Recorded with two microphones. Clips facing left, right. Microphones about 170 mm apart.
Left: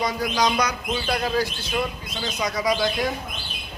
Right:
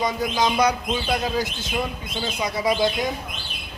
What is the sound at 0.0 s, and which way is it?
Speech, 25° right (ahead or behind).